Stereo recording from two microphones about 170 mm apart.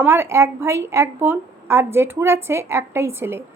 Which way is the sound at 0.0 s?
15° right (ahead or behind).